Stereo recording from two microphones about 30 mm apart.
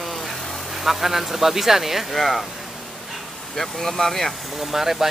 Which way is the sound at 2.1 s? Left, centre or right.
Centre.